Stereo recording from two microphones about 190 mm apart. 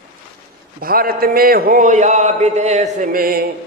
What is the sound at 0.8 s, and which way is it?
Mantra, 50° right (ahead or behind).